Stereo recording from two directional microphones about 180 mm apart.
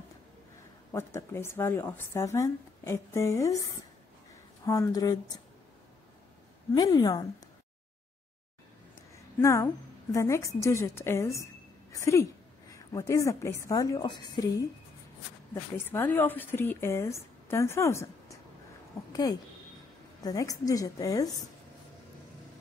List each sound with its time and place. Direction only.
0.9 s speech: 15° left (ahead or behind)
4.6 s a woman's voice: 20° left (ahead or behind)
6.7 s a woman's voice: 20° left (ahead or behind)
9.4 s a woman's voice: 15° left (ahead or behind)
15.9 s speech: 10° left (ahead or behind)
20.2 s a woman's voice: 20° left (ahead or behind)